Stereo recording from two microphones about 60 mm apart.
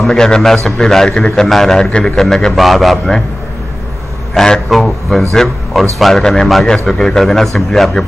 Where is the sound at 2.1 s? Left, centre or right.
Centre.